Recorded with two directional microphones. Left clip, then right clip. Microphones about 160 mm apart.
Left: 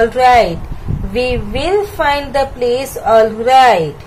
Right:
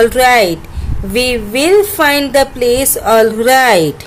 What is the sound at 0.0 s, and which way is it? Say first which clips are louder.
Speech: right 1 dB; 45° right (ahead or behind).